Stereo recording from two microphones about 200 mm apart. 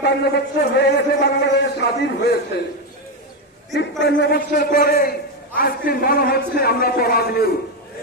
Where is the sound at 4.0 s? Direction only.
55° left (ahead or behind).